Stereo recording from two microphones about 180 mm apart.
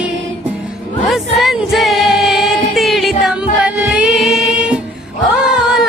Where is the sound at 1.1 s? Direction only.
Centre (ahead or behind).